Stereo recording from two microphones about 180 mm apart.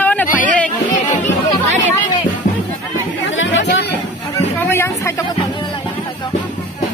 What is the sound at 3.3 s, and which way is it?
Chatter, 90° left.